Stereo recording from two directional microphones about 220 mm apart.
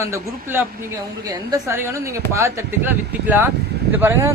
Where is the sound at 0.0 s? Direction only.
15° right (ahead or behind).